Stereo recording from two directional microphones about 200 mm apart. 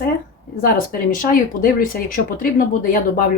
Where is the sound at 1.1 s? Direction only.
45° left (ahead or behind).